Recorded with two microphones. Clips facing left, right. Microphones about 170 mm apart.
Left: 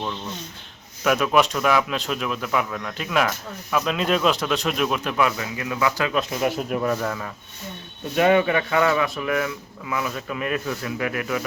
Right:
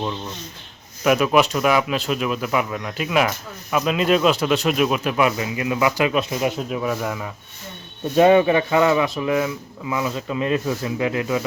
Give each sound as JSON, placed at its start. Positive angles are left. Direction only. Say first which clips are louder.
{"t": 1.0, "sound": "a man's voice", "louder": "right 3 dB", "side_deg": -5}
{"t": 6.4, "sound": "speech", "louder": "even", "side_deg": -5}
{"t": 8.1, "sound": "speech", "louder": "right 4 dB", "side_deg": -25}